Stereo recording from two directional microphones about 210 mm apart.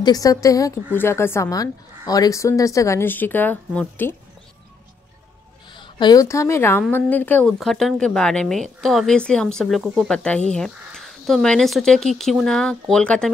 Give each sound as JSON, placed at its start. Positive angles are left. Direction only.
{"t": 0.0, "sound": "a woman's voice", "side_deg": 15}
{"t": 5.8, "sound": "a woman's voice", "side_deg": 20}